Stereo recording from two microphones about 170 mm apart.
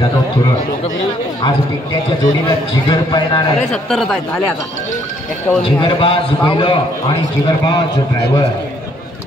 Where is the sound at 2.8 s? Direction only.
25° left (ahead or behind).